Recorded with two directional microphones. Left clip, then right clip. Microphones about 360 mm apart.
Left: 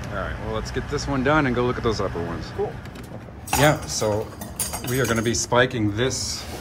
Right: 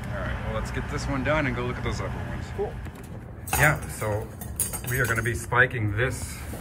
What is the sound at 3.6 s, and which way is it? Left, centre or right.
Speech, centre.